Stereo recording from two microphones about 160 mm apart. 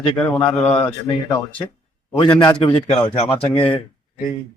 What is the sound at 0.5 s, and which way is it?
Speech, 35° left (ahead or behind).